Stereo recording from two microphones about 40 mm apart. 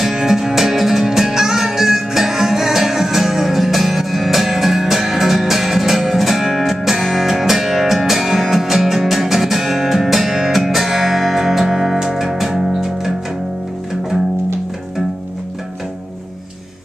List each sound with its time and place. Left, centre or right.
0.0 s music: centre